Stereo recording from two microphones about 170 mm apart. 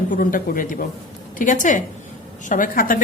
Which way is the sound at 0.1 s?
55° left (ahead or behind).